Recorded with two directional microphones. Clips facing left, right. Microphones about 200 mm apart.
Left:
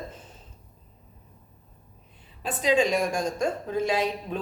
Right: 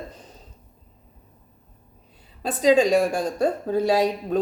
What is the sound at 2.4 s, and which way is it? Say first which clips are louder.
Speech: right 5 dB; 40° right (ahead or behind).